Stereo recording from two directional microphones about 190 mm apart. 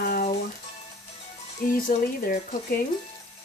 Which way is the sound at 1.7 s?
45° left (ahead or behind).